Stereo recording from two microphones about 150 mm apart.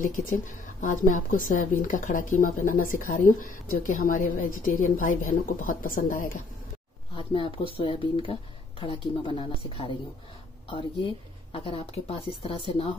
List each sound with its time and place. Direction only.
0.0 s a woman's voice: 65° left (ahead or behind)
7.2 s speech: 35° left (ahead or behind)
11.5 s speech: 40° left (ahead or behind)